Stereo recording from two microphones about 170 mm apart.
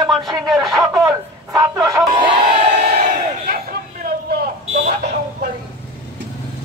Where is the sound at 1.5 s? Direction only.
20° right (ahead or behind).